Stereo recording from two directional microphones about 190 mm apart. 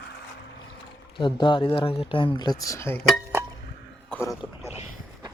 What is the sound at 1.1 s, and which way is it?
Speech, 25° left (ahead or behind).